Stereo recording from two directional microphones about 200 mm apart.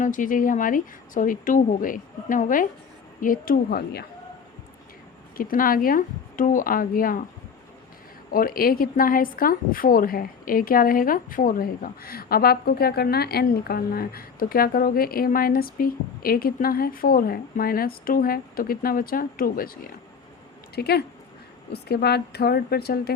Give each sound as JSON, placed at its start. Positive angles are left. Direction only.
{"t": 0.0, "sound": "a woman's voice", "side_deg": 40}
{"t": 5.4, "sound": "a woman's voice", "side_deg": 45}
{"t": 8.3, "sound": "a woman's voice", "side_deg": 45}